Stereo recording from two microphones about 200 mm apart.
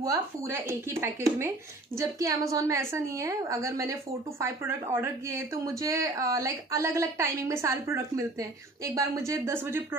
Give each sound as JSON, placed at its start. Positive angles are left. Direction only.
{"t": 0.0, "sound": "a woman's voice", "side_deg": -15}